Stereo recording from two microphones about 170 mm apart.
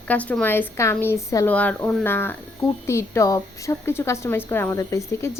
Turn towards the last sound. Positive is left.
turn(degrees=15)  # may be behind; listen again after turning